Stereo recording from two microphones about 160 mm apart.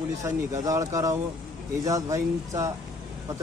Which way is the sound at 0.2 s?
20° right (ahead or behind).